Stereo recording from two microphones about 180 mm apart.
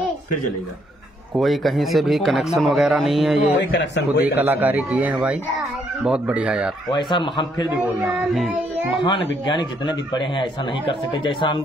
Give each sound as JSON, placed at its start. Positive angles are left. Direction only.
{"t": 1.3, "sound": "a man's voice", "side_deg": 0}
{"t": 3.7, "sound": "a man's voice", "side_deg": 75}
{"t": 4.4, "sound": "speech", "side_deg": -10}
{"t": 6.9, "sound": "speech", "side_deg": 25}
{"t": 8.9, "sound": "speech", "side_deg": 25}